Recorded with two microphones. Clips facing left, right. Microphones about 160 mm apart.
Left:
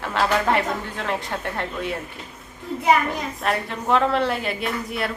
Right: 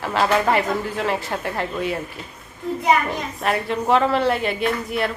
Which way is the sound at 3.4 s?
Centre (ahead or behind).